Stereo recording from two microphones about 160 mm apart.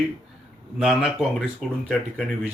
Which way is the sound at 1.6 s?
Centre (ahead or behind).